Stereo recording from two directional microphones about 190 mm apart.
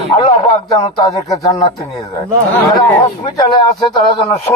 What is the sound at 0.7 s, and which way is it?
Speech, 20° left (ahead or behind).